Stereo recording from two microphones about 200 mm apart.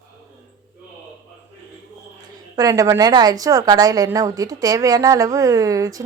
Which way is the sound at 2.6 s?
15° right (ahead or behind).